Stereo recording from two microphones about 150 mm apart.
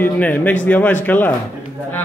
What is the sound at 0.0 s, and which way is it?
A man's voice, 10° left (ahead or behind).